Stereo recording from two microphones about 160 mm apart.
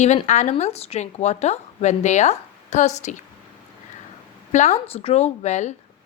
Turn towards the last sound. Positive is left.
turn(degrees=45)  # may be behind; listen again after turning